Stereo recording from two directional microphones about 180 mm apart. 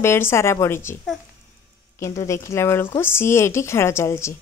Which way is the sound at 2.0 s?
15° left (ahead or behind).